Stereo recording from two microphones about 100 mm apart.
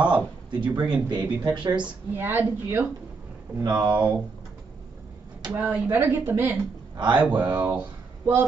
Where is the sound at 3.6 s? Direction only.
45° right (ahead or behind).